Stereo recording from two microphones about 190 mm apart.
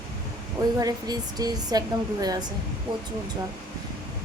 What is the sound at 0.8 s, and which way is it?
Speech, 20° right (ahead or behind).